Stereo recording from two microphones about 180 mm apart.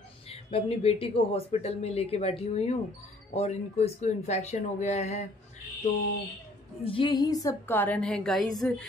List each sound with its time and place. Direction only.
0.3 s speech: 35° left (ahead or behind)
6.8 s a woman's voice: 30° left (ahead or behind); by 8.8 s 5° left (ahead or behind)